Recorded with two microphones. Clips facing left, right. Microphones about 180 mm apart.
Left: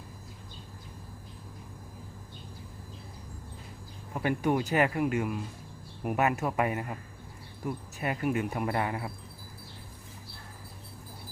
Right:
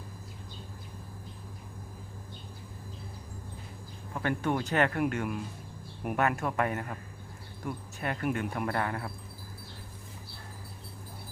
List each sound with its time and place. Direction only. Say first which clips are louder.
4.1 s speech: left 2 dB; 10° left (ahead or behind)
6.3 s speech: left 1 dB; 10° left (ahead or behind)